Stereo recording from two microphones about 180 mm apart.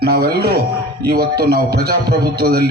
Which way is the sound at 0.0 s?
60° right (ahead or behind).